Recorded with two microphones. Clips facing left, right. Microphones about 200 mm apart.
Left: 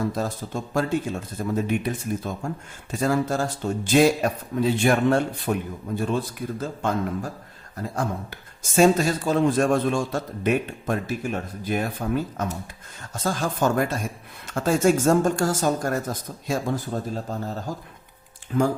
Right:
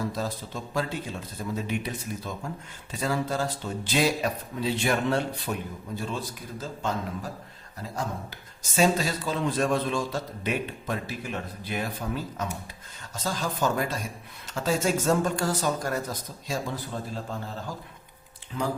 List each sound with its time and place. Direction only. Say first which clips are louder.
0.1 s a man's voice: left 4 dB; 50° left (ahead or behind)
18.5 s a man's voice: left 9 dB; 55° left (ahead or behind)